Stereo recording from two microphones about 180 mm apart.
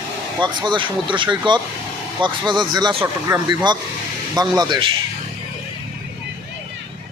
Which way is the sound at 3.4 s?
25° right (ahead or behind).